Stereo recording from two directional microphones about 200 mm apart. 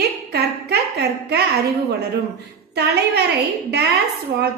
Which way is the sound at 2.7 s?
55° right (ahead or behind).